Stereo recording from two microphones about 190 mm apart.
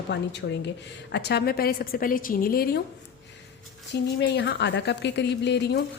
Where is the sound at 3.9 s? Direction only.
65° left (ahead or behind).